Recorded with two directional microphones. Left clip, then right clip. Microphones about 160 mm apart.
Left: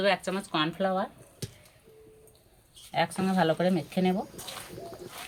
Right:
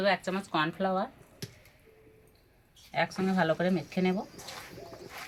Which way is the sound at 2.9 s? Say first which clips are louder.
Left 2 dB; 20° left (ahead or behind).